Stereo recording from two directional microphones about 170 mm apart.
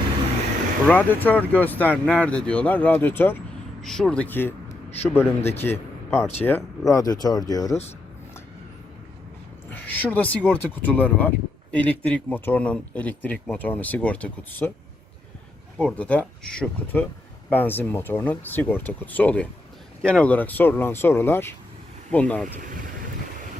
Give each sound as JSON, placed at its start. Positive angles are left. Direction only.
{"t": 0.9, "sound": "speech", "side_deg": 10}
{"t": 9.6, "sound": "speech", "side_deg": 10}
{"t": 15.8, "sound": "speech", "side_deg": 5}